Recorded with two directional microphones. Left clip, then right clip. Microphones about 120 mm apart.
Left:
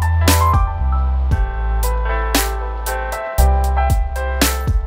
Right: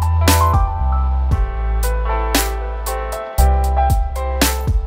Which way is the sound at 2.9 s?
15° right (ahead or behind).